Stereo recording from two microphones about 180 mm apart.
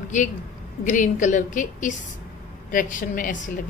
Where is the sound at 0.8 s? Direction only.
45° left (ahead or behind).